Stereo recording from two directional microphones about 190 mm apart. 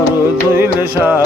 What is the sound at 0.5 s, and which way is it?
Music, 10° right (ahead or behind).